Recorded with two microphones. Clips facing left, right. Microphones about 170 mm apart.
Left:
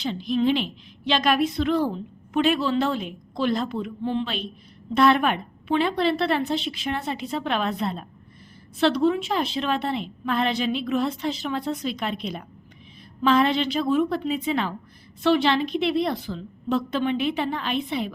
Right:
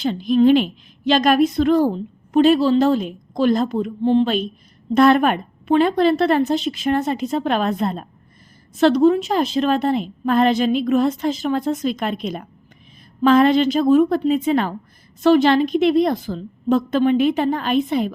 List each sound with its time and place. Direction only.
0.0 s a woman's voice: 50° right (ahead or behind)